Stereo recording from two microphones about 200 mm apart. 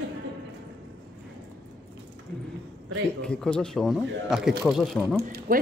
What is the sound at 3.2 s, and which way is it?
Speech, 5° left (ahead or behind).